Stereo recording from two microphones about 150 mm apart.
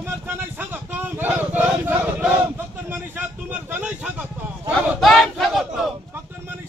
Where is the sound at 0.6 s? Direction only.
10° right (ahead or behind).